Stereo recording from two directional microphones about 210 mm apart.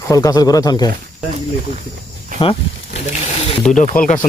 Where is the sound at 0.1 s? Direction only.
15° left (ahead or behind).